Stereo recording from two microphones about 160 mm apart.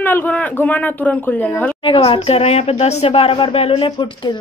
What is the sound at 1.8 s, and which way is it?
Speech, 35° left (ahead or behind).